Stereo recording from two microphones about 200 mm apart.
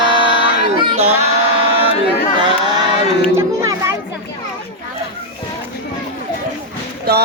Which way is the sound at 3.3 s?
15° right (ahead or behind).